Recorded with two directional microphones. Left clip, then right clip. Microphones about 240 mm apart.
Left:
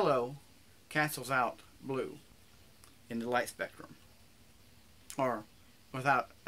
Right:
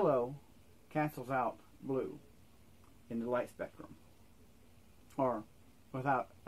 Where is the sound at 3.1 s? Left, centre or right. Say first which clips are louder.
Left 3 dB; centre.